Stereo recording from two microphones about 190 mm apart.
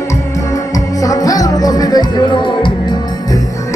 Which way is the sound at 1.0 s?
20° left (ahead or behind).